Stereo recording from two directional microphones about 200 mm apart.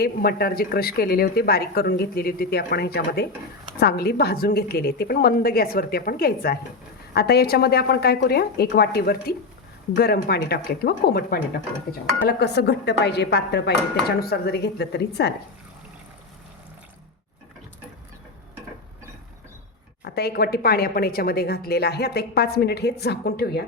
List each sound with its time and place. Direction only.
0.0 s a woman's voice: 50° left (ahead or behind)
20.1 s a woman's voice: 50° left (ahead or behind)